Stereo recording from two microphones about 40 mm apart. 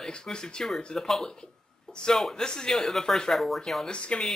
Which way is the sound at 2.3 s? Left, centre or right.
Centre.